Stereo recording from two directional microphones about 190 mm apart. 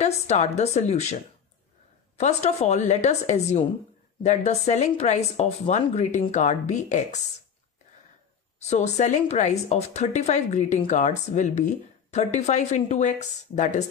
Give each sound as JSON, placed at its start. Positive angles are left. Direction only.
{"t": 0.0, "sound": "speech", "side_deg": 35}
{"t": 2.1, "sound": "speech", "side_deg": 35}
{"t": 8.5, "sound": "speech", "side_deg": 35}